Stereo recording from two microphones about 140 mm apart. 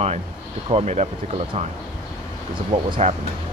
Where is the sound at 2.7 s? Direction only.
40° right (ahead or behind).